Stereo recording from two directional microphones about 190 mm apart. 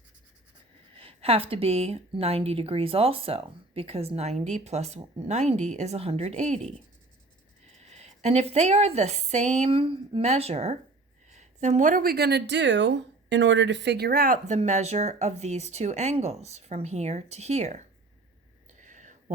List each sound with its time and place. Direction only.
0.9 s a woman's voice: 30° right (ahead or behind)
7.9 s a woman's voice: 35° right (ahead or behind)
18.8 s a sound: 40° right (ahead or behind)